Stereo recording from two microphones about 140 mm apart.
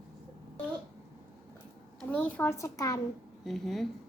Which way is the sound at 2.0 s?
10° left (ahead or behind).